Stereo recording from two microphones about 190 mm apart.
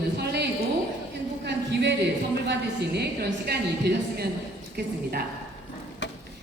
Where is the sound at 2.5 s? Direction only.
60° right (ahead or behind).